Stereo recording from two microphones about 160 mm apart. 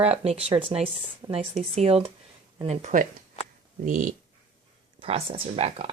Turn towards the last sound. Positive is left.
turn(degrees=-35)  # may be behind; listen again after turning